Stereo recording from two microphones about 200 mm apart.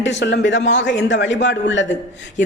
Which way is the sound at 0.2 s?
65° left (ahead or behind).